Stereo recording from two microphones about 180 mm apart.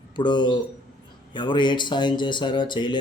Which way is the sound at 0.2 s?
25° left (ahead or behind).